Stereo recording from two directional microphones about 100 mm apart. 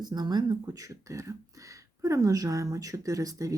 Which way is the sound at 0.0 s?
45° right (ahead or behind).